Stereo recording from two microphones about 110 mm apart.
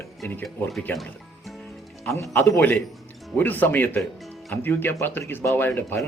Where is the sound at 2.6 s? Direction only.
15° left (ahead or behind).